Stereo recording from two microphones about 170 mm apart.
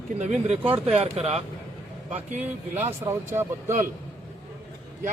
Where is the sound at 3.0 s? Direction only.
15° right (ahead or behind).